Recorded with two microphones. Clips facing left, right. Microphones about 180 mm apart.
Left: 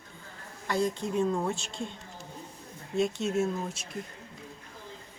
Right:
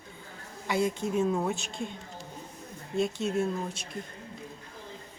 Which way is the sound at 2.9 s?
Centre (ahead or behind).